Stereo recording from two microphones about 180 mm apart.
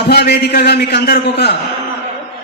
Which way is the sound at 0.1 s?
60° left (ahead or behind).